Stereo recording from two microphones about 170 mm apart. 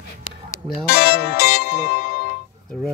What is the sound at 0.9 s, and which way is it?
Music, 65° left (ahead or behind).